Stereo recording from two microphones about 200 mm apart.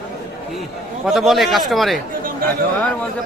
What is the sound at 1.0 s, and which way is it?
A man's voice, centre (ahead or behind).